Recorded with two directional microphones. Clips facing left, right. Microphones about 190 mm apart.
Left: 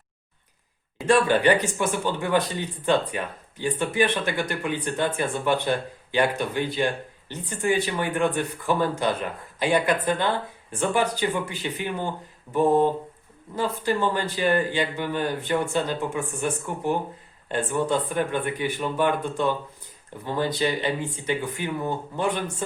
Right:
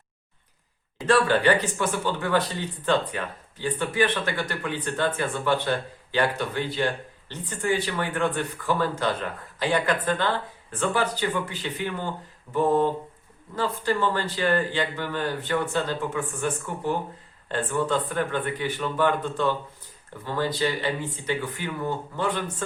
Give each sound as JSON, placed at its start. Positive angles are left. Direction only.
{"t": 1.0, "sound": "speech", "side_deg": 15}